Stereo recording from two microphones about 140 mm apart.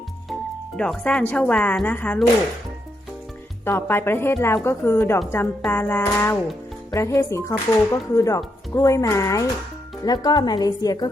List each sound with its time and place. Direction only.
0.8 s speech: 5° left (ahead or behind)
3.6 s speech: 15° left (ahead or behind)